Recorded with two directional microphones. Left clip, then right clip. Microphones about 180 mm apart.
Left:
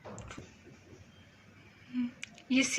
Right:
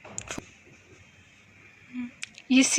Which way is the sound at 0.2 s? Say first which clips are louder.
Right 11 dB; 45° right (ahead or behind).